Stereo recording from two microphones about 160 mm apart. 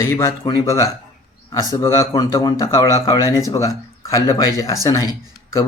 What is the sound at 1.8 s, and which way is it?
A man's voice, 20° left (ahead or behind).